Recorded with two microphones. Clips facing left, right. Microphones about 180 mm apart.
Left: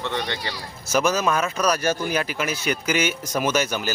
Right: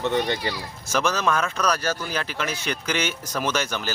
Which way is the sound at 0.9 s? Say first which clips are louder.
Left 2 dB; 10° left (ahead or behind).